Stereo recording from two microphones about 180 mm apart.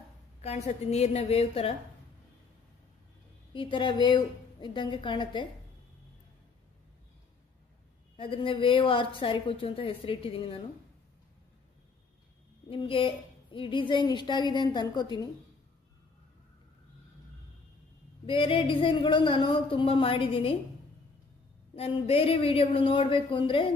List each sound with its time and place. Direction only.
0.4 s a woman's voice: 35° left (ahead or behind)
3.5 s a woman's voice: 25° left (ahead or behind)
8.2 s a woman's voice: 30° left (ahead or behind)
12.6 s a woman's voice: 30° left (ahead or behind)
18.2 s a woman's voice: 30° left (ahead or behind)
21.7 s a woman's voice: 35° left (ahead or behind)